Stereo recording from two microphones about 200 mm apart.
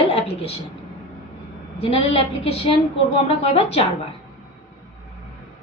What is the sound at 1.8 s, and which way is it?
A woman's voice, 30° left (ahead or behind).